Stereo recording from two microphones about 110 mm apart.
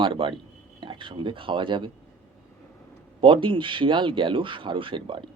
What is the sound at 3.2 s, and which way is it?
Speech, 50° right (ahead or behind).